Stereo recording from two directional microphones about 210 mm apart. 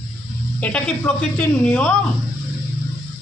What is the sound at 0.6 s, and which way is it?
Speech, 5° left (ahead or behind).